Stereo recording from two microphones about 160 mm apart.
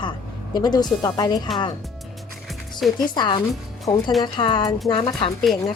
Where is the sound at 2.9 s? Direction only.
30° left (ahead or behind).